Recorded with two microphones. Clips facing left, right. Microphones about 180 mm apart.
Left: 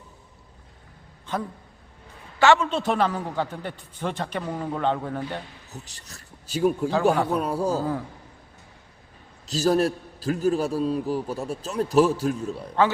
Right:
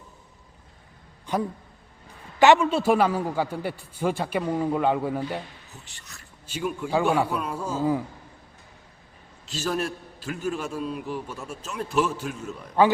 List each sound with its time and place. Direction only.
1.3 s a man's voice: 15° right (ahead or behind)
5.7 s a man's voice: 40° left (ahead or behind)
9.5 s a man's voice: 40° left (ahead or behind)